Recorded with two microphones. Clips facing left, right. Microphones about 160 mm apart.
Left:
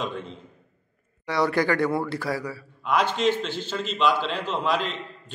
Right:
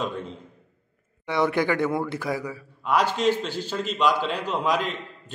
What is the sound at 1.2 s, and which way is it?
A man's voice, 20° right (ahead or behind).